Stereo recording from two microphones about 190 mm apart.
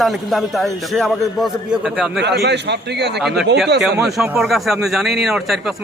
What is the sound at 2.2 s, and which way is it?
A man's voice, 65° right (ahead or behind).